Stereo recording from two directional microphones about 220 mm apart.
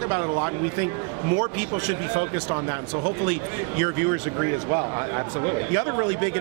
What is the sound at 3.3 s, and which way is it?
A man's voice, 15° right (ahead or behind).